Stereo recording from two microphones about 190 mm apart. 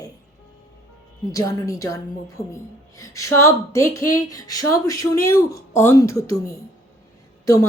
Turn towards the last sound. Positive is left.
turn(degrees=20)  # may be behind; listen again after turning